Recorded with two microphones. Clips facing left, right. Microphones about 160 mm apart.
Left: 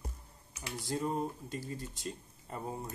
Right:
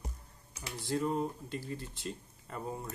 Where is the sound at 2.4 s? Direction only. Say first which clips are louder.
Even; 25° left (ahead or behind).